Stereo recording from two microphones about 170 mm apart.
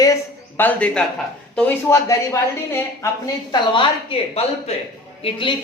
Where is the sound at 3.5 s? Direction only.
25° left (ahead or behind).